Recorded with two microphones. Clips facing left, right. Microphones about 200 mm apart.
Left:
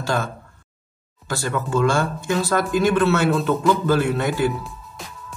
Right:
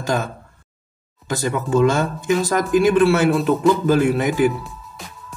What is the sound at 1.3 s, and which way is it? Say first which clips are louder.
Speech: right 4 dB; 20° right (ahead or behind).